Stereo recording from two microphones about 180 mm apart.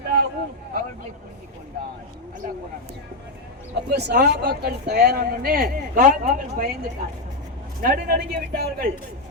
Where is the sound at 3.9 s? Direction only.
65° right (ahead or behind).